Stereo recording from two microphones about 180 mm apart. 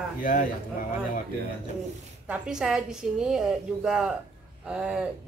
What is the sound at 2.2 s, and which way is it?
A woman's voice, 5° right (ahead or behind).